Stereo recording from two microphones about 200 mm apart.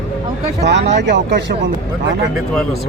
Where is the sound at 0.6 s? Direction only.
60° right (ahead or behind).